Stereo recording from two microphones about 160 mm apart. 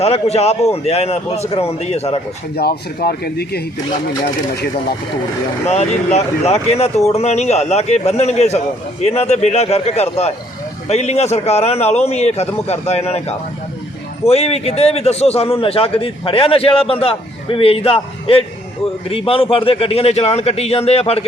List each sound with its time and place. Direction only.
0.0 s a man's voice: 40° left (ahead or behind)
2.6 s speech: 75° left (ahead or behind)
5.6 s a man's voice: 45° left (ahead or behind)